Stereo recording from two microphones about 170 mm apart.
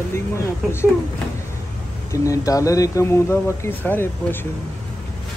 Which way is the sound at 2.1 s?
20° left (ahead or behind).